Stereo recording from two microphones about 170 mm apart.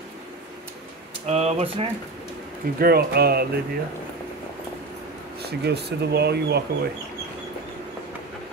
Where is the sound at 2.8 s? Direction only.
65° right (ahead or behind).